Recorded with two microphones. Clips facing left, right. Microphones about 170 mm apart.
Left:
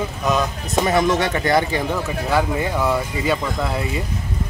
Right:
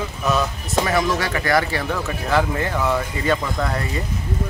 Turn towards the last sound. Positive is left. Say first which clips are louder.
# even
turn(degrees=10)  # may be behind; listen again after turning